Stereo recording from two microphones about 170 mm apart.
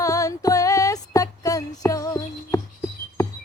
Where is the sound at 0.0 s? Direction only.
20° left (ahead or behind).